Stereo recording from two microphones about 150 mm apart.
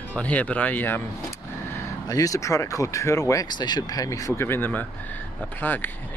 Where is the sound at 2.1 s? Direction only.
20° left (ahead or behind).